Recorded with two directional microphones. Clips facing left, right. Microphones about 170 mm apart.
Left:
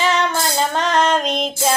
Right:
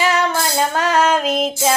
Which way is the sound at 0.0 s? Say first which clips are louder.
Right 1 dB; 10° right (ahead or behind).